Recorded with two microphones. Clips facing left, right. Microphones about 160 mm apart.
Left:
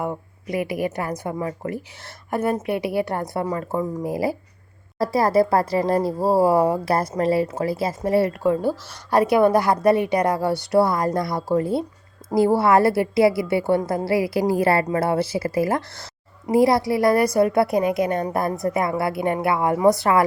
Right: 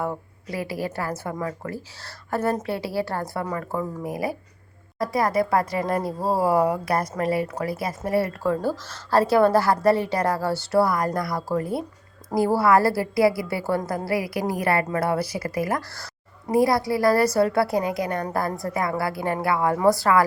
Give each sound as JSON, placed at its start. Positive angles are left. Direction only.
{"t": 0.0, "sound": "speech", "side_deg": 15}
{"t": 12.2, "sound": "a sound", "side_deg": 25}
{"t": 12.5, "sound": "speech", "side_deg": 25}